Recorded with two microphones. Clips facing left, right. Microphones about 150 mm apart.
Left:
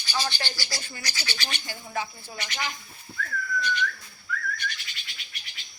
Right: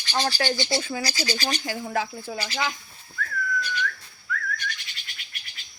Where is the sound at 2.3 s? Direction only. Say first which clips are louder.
Right 7 dB; 35° right (ahead or behind).